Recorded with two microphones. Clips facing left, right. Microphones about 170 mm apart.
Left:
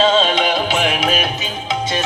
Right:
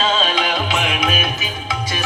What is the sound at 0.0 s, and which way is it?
Music, 30° left (ahead or behind).